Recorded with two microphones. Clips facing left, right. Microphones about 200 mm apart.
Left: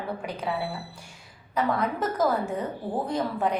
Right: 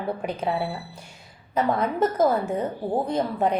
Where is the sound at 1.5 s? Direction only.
20° right (ahead or behind).